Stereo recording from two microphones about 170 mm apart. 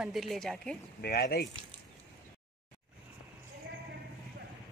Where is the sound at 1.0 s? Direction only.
65° left (ahead or behind).